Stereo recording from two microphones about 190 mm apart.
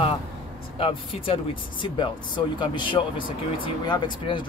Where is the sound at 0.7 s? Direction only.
30° left (ahead or behind).